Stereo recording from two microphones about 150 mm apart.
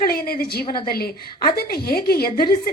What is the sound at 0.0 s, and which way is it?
A woman's voice, 80° left.